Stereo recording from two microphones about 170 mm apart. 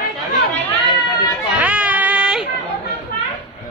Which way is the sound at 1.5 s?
10° right (ahead or behind).